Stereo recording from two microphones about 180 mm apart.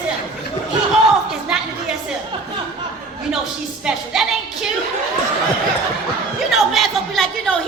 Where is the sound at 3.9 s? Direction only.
5° right (ahead or behind).